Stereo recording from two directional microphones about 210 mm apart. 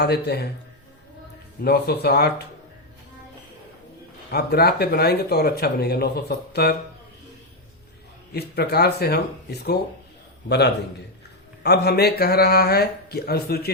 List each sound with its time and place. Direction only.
0.0 s speech: 50° left (ahead or behind)
1.6 s speech: 50° left (ahead or behind)
4.3 s speech: 50° left (ahead or behind)
8.3 s speech: 50° left (ahead or behind)
11.6 s speech: 50° left (ahead or behind)